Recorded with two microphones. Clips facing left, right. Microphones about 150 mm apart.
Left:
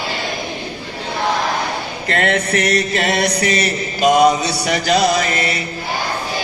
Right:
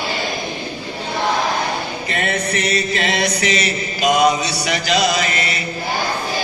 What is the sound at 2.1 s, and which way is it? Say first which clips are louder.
Chant: left 5 dB; 65° left (ahead or behind).